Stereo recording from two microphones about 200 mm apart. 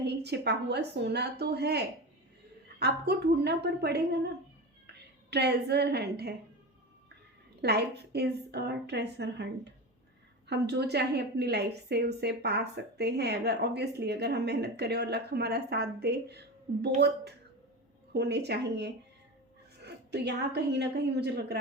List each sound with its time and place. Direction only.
0.0 s a woman's voice: 55° right (ahead or behind)
7.6 s a woman's voice: 55° right (ahead or behind)
18.1 s a woman's voice: 55° right (ahead or behind)